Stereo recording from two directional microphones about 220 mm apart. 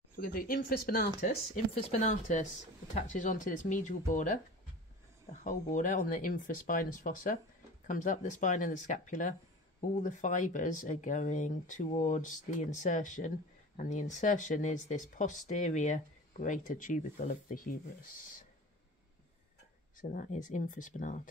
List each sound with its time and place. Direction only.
0.1 s speech: 40° left (ahead or behind)
5.4 s speech: 35° left (ahead or behind)
20.0 s speech: 35° left (ahead or behind)